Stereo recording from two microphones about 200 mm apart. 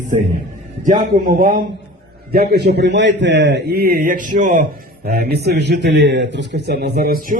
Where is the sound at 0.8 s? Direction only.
45° right (ahead or behind).